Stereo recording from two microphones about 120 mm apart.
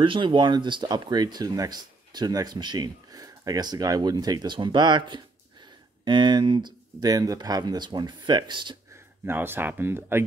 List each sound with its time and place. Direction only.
0.0 s speech: 45° right (ahead or behind)
8.9 s speech: 20° right (ahead or behind)